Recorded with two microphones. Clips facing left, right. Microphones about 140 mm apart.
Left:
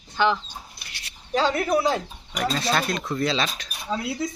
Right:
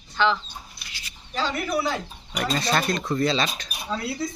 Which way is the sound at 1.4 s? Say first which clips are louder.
Left 3 dB; 35° left (ahead or behind).